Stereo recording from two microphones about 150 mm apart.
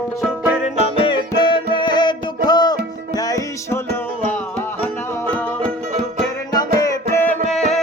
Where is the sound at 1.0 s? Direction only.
35° left (ahead or behind); by 5.5 s 10° left (ahead or behind).